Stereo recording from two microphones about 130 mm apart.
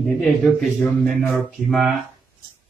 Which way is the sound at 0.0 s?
Centre (ahead or behind).